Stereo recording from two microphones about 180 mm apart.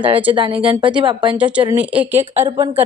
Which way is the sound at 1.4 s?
5° right (ahead or behind).